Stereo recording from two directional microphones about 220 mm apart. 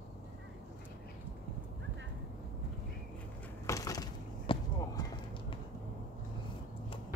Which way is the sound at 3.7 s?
15° left (ahead or behind).